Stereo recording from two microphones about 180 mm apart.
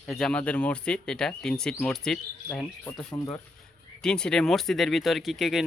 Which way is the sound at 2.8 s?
20° left (ahead or behind).